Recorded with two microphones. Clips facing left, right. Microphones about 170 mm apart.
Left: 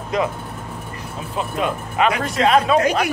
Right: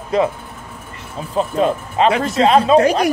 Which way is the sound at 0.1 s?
30° right (ahead or behind).